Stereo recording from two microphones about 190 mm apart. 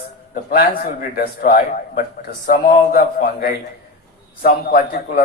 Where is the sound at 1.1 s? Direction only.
50° left (ahead or behind).